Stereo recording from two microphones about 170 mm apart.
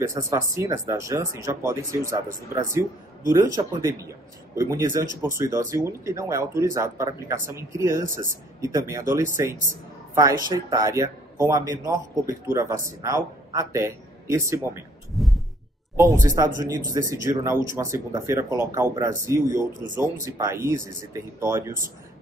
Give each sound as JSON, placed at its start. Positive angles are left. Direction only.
{"t": 0.0, "sound": "a man's voice", "side_deg": -20}
{"t": 15.1, "sound": "heart sounds", "side_deg": 0}
{"t": 16.0, "sound": "a man's voice", "side_deg": -20}